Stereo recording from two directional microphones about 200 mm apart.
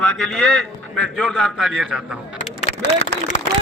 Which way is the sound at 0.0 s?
Centre (ahead or behind).